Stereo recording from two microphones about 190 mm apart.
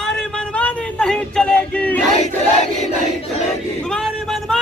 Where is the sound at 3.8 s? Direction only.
5° left (ahead or behind).